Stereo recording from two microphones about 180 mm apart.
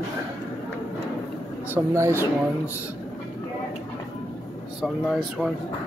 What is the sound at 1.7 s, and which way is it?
Speech, 15° right (ahead or behind).